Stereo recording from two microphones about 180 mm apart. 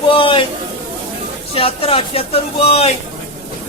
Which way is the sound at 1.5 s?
30° left (ahead or behind).